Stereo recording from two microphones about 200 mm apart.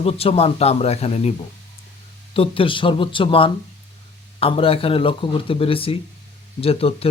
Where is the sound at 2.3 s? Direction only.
25° left (ahead or behind).